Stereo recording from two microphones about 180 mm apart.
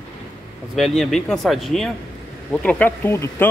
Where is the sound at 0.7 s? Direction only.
Centre (ahead or behind).